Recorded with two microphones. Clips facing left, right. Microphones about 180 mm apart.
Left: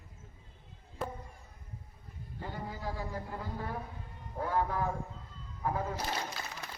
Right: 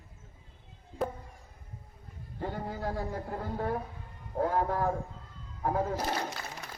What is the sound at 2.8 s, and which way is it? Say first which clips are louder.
A man's voice: right 4 dB; 55° right (ahead or behind).